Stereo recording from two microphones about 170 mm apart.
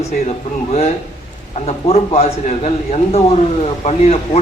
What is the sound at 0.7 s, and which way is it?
A man's voice, 40° left (ahead or behind).